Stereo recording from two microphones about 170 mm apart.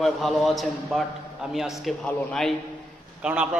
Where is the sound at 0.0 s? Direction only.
Centre (ahead or behind).